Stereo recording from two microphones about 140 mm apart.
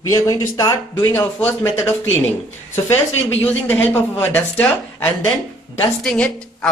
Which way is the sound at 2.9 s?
15° left (ahead or behind).